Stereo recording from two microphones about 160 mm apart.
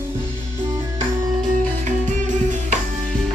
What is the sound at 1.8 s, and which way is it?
Music, 50° right (ahead or behind).